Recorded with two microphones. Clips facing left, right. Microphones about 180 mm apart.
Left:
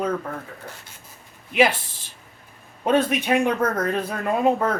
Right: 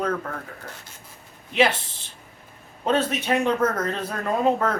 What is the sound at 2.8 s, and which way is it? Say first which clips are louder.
Speech: left 3 dB; 15° left (ahead or behind).